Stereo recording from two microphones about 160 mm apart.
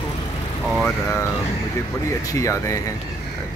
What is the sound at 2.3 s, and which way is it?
Speech, 20° left (ahead or behind).